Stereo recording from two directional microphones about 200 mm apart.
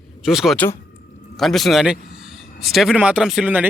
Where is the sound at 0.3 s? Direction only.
Centre (ahead or behind).